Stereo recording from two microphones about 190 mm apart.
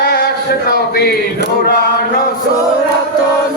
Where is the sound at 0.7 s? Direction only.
60° left (ahead or behind).